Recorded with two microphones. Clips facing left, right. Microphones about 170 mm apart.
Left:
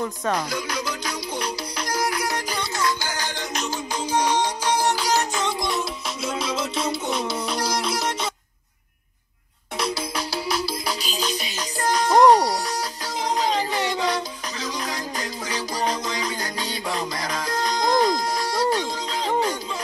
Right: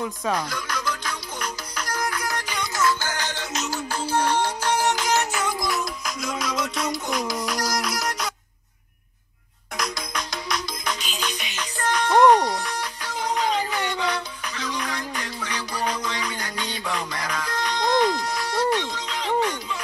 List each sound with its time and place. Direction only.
1.0 s music: 35° left (ahead or behind)
2.0 s music: 15° left (ahead or behind)
5.6 s music: 30° left (ahead or behind)
9.8 s music: 30° left (ahead or behind)